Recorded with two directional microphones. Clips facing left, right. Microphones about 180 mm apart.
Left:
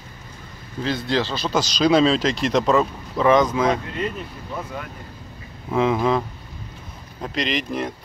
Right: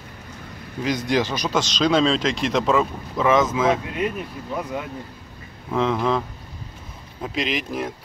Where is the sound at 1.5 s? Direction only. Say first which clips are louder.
Left 3 dB; 5° left (ahead or behind).